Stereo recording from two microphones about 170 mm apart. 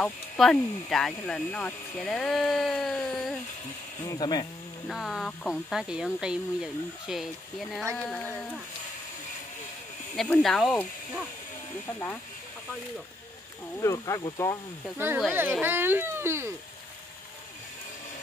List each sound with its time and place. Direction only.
0.0 s speech: 5° left (ahead or behind)
4.0 s speech: 25° left (ahead or behind)
4.8 s speech: centre (ahead or behind)
10.1 s speech: 5° left (ahead or behind)
13.7 s speech: 20° left (ahead or behind)
15.0 s speech: 10° right (ahead or behind)